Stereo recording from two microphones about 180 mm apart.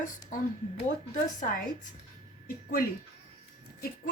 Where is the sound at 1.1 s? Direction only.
50° left (ahead or behind).